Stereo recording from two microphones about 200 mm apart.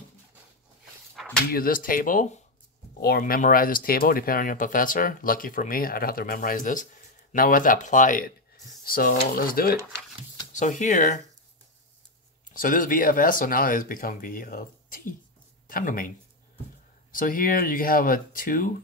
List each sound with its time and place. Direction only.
1.2 s a sound: centre (ahead or behind)
1.5 s speech: 45° left (ahead or behind)
3.0 s speech: 50° left (ahead or behind)
12.5 s speech: 45° left (ahead or behind)
17.1 s speech: 45° left (ahead or behind)